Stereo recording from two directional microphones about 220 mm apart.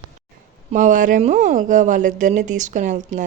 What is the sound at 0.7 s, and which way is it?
Speech, 35° right (ahead or behind).